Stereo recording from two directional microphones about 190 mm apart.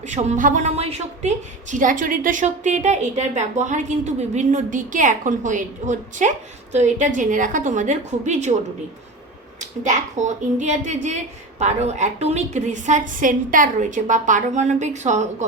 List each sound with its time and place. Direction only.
0.0 s a woman's voice: 40° right (ahead or behind)
9.6 s a woman's voice: 40° right (ahead or behind)